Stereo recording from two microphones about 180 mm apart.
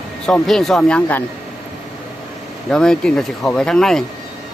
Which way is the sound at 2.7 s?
5° left (ahead or behind).